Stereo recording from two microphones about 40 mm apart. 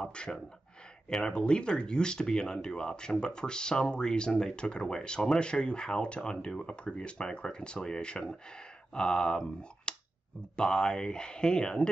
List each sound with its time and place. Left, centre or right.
0.0 s speech: left